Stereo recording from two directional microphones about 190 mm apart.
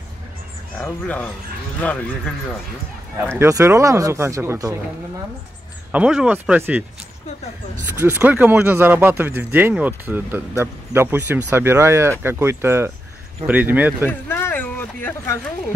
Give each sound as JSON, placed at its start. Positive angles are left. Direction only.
{"t": 0.8, "sound": "speech", "side_deg": 10}
{"t": 3.3, "sound": "speech", "side_deg": -15}
{"t": 5.9, "sound": "speech", "side_deg": -5}
{"t": 7.8, "sound": "speech", "side_deg": -10}
{"t": 14.0, "sound": "speech", "side_deg": 10}